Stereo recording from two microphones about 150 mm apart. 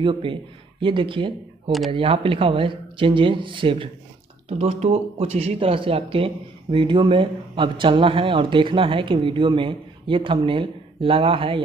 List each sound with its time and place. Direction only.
0.0 s speech: 35° right (ahead or behind)